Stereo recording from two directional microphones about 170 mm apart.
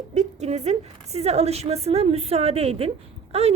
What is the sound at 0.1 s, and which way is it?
A woman's voice, 45° right (ahead or behind).